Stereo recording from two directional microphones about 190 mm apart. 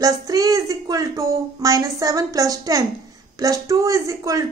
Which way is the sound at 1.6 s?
15° right (ahead or behind).